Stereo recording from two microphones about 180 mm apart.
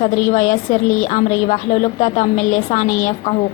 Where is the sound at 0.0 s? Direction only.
45° left (ahead or behind).